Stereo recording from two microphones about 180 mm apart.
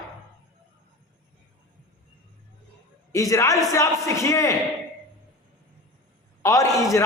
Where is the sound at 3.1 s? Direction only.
20° left (ahead or behind).